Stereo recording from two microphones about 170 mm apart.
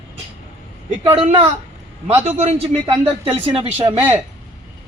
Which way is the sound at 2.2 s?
40° right (ahead or behind).